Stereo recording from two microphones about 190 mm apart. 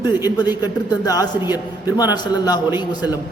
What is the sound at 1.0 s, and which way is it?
A man's voice, 20° left (ahead or behind).